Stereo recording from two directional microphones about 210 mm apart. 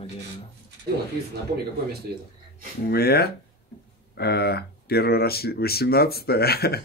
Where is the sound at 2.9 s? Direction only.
50° left (ahead or behind).